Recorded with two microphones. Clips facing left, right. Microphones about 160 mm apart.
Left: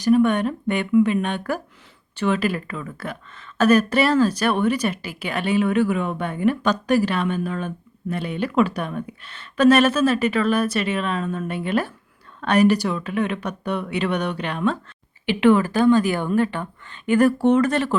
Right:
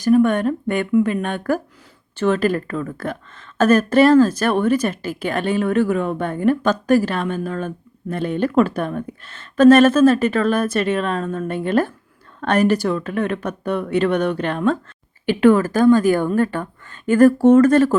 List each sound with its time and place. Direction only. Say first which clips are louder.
0.0 s speech: right 2 dB; 45° right (ahead or behind)